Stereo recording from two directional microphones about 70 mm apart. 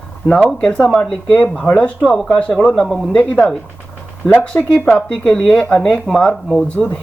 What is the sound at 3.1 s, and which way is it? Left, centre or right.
Speech, centre.